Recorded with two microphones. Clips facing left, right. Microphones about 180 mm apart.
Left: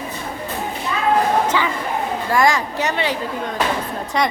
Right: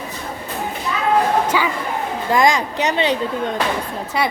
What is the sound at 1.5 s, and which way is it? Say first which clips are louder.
A woman's voice: even; 10° right (ahead or behind).